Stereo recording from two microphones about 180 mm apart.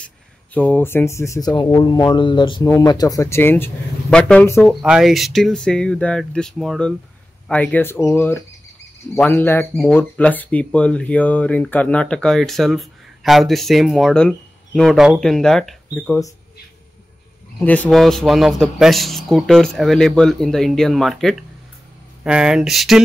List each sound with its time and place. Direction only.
0.6 s speech: 10° left (ahead or behind)
17.6 s speech: 5° left (ahead or behind)